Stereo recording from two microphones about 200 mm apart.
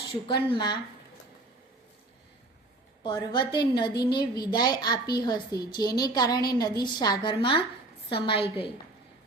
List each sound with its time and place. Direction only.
0.5 s a woman's voice: 20° left (ahead or behind)
3.0 s a woman's voice: 25° left (ahead or behind)